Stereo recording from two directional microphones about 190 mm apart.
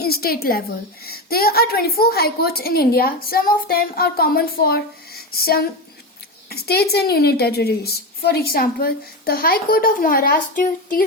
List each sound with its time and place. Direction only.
0.0 s a woman's voice: 55° left (ahead or behind)